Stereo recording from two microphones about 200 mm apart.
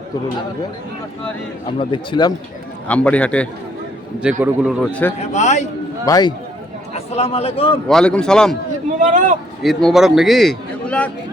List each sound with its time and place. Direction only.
1.8 s speech: 25° left (ahead or behind)
2.8 s a man's voice: 5° left (ahead or behind)
4.2 s a man's voice: 5° right (ahead or behind)
4.8 s a man's voice: 5° left (ahead or behind)
5.3 s a man's voice: 35° left (ahead or behind)
6.1 s speech: 20° left (ahead or behind)
6.9 s a man's voice: 30° left (ahead or behind)
7.9 s a man's voice: 5° left (ahead or behind)
9.0 s speech: 40° right (ahead or behind)
9.6 s a man's voice: centre (ahead or behind)